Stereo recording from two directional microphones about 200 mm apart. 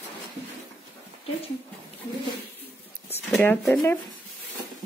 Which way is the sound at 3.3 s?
10° left (ahead or behind).